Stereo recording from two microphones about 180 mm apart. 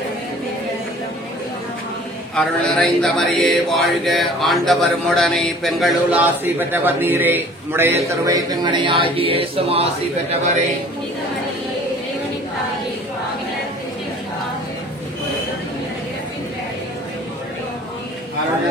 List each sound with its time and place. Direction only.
2.3 s mantra: centre (ahead or behind); by 9.8 s 30° right (ahead or behind)